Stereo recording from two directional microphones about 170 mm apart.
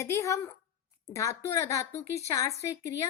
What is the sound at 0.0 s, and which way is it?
A woman's voice, 15° left (ahead or behind).